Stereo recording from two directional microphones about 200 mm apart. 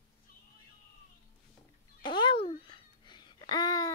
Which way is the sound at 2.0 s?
25° left (ahead or behind).